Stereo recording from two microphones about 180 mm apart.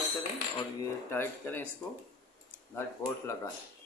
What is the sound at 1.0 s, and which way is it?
Speech, 10° left (ahead or behind).